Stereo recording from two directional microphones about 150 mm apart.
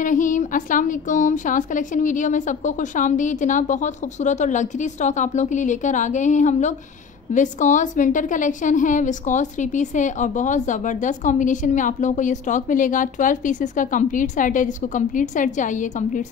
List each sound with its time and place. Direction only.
0.0 s a woman's voice: 60° left (ahead or behind)